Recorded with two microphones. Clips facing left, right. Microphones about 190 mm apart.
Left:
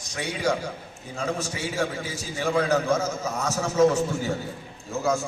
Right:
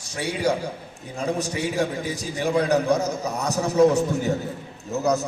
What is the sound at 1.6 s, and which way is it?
A man's voice, 15° right (ahead or behind).